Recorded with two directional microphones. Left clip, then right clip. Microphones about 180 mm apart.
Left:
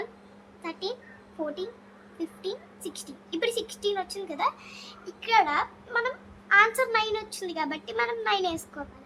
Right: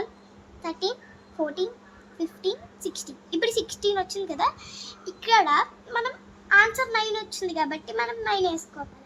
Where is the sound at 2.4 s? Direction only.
25° right (ahead or behind).